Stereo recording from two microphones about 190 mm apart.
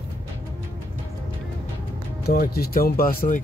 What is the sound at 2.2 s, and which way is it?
Speech, 55° left (ahead or behind).